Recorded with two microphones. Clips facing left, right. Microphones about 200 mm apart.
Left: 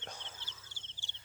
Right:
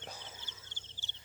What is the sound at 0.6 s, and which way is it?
Insect, 10° left (ahead or behind).